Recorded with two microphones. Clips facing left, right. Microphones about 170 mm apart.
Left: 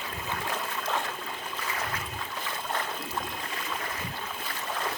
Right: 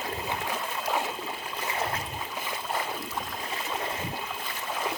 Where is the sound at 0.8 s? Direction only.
15° right (ahead or behind).